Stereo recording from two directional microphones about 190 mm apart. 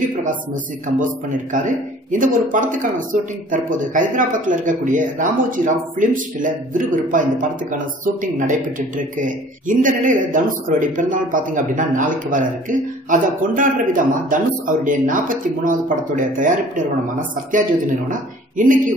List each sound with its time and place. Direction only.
0.9 s a man's voice: 45° right (ahead or behind)
18.1 s speech: 45° right (ahead or behind)